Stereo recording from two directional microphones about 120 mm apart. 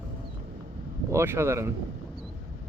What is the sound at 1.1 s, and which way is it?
Speech, 20° right (ahead or behind).